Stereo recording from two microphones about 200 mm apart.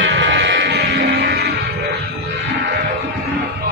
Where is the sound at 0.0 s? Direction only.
65° right (ahead or behind).